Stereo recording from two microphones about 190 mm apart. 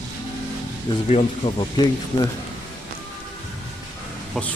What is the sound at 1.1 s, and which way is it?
Speech, 30° left (ahead or behind).